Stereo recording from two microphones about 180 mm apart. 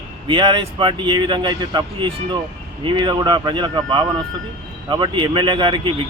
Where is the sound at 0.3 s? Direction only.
25° right (ahead or behind).